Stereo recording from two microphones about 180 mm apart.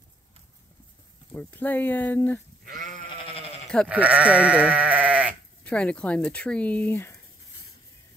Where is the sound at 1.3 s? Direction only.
10° left (ahead or behind).